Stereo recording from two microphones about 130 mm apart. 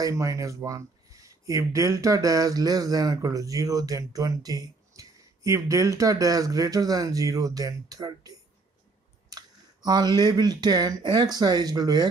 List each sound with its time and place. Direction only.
0.0 s speech: 25° right (ahead or behind)
9.8 s speech: 30° right (ahead or behind)